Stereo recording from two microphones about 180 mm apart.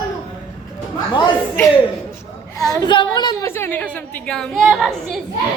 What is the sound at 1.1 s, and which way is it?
A woman's voice, 20° left (ahead or behind).